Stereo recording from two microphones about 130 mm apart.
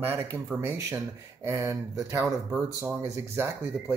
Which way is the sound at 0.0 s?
20° right (ahead or behind).